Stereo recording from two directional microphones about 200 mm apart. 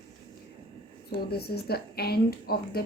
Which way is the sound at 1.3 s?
50° left (ahead or behind).